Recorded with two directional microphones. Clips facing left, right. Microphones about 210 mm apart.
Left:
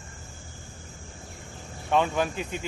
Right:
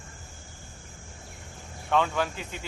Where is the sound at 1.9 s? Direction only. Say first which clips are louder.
Left 2 dB; 15° left (ahead or behind).